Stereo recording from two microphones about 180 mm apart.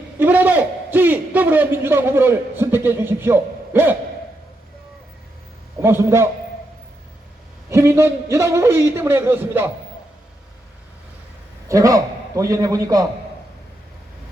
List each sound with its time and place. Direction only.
0.2 s a sound: 10° right (ahead or behind)
5.8 s a man's voice: 15° right (ahead or behind)
7.7 s a man's voice: 15° right (ahead or behind)
11.7 s a man's voice: 20° right (ahead or behind)